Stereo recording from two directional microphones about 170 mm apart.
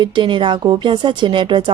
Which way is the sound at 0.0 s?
30° right (ahead or behind).